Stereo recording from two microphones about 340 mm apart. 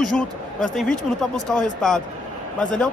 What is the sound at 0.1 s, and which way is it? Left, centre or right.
Speech, centre.